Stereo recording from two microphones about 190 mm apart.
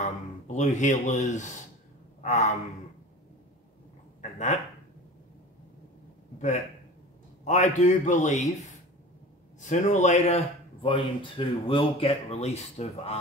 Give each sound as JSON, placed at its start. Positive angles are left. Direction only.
{"t": 0.0, "sound": "speech", "side_deg": 40}
{"t": 4.2, "sound": "a sound", "side_deg": 40}
{"t": 7.4, "sound": "speech", "side_deg": 40}
{"t": 9.6, "sound": "speech", "side_deg": 40}